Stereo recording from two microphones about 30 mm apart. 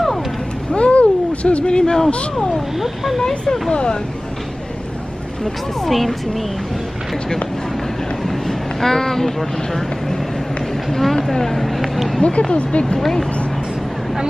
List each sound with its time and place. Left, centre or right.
0.7 s a sound: left
1.7 s a man's voice: left
2.5 s speech: centre
3.7 s speech: left
5.4 s speech: centre
8.2 s speech: centre
11.6 s speech: centre
12.2 s speech: left
12.8 s speech: centre